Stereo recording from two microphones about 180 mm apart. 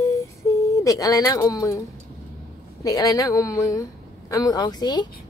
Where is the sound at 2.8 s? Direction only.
20° left (ahead or behind).